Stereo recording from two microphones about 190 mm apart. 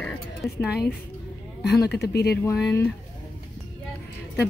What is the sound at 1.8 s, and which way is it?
Speech, 60° left (ahead or behind).